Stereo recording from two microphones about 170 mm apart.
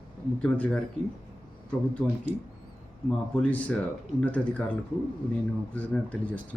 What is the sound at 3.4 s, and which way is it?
Speech, 10° left (ahead or behind).